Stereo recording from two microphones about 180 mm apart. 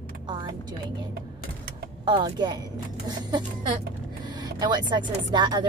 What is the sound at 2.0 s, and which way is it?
Speech, 25° right (ahead or behind).